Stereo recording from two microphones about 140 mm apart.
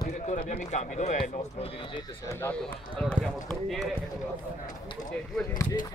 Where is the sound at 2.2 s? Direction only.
20° left (ahead or behind).